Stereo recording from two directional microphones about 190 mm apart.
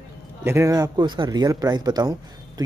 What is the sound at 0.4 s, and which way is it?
Speech, 15° right (ahead or behind).